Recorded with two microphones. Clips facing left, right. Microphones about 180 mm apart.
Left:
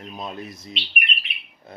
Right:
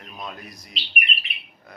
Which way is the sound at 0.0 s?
25° left (ahead or behind).